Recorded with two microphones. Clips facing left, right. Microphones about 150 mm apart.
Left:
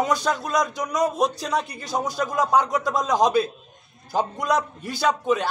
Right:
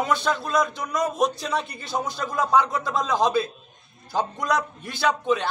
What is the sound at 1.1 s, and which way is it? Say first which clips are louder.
Speech: even; 35° left (ahead or behind).